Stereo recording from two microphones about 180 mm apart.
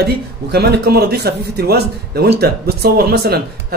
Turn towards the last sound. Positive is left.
turn(degrees=-60)  # may be behind; listen again after turning